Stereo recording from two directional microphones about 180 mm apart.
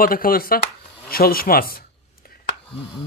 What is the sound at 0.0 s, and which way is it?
Speech, 50° left (ahead or behind).